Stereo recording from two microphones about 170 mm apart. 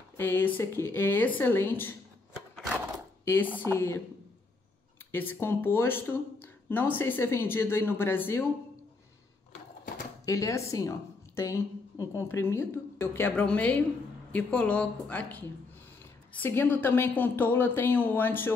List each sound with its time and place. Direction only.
0.2 s a woman's voice: 10° left (ahead or behind)
3.3 s a woman's voice: 10° left (ahead or behind)
5.1 s a woman's voice: 10° left (ahead or behind)
10.2 s a woman's voice: 20° left (ahead or behind)